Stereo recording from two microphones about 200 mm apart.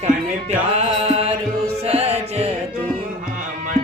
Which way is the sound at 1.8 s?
30° right (ahead or behind).